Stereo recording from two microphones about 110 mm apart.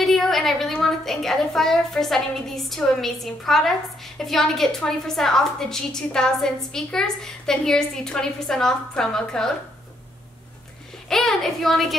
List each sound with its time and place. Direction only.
0.0 s a woman's voice: centre (ahead or behind)
11.1 s a woman's voice: 5° left (ahead or behind)